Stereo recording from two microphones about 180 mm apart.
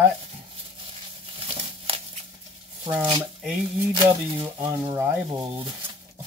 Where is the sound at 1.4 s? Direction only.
35° right (ahead or behind).